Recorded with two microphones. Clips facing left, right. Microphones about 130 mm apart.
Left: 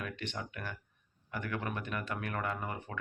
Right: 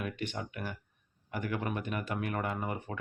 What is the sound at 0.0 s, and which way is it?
Speech, 15° right (ahead or behind).